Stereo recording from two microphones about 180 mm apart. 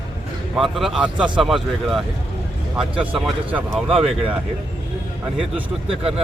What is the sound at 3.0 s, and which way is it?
A man's voice, 10° right (ahead or behind).